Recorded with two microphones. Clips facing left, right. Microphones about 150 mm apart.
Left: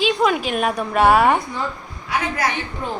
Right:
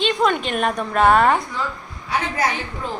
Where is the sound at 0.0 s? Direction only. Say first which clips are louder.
Left 1 dB; 5° left (ahead or behind).